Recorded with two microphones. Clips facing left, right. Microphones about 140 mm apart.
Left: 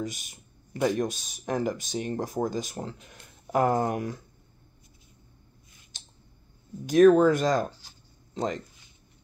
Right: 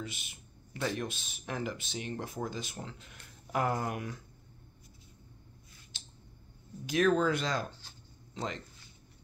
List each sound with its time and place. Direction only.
0.0 s speech: 40° left (ahead or behind)
5.9 s clicking: 45° left (ahead or behind)
6.9 s speech: 45° left (ahead or behind)